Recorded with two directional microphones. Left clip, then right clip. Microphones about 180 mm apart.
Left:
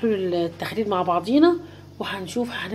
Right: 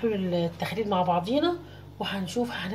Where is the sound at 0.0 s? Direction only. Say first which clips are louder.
Left 5 dB; 40° left (ahead or behind).